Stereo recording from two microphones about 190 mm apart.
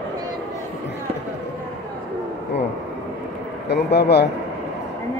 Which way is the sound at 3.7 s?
60° left (ahead or behind).